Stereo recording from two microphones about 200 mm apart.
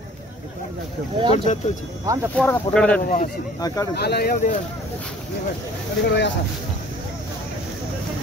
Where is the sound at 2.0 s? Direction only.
15° right (ahead or behind).